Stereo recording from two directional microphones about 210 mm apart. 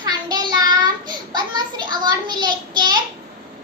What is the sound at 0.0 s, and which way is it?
Child singing, 20° right (ahead or behind).